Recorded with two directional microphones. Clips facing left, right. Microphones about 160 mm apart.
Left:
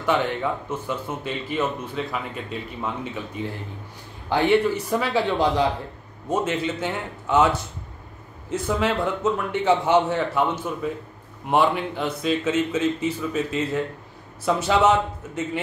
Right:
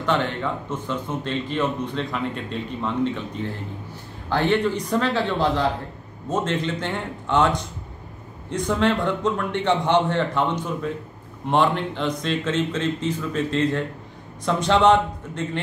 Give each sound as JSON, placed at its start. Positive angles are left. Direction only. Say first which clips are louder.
{"t": 0.0, "sound": "a man's voice", "louder": "left 1 dB", "side_deg": 10}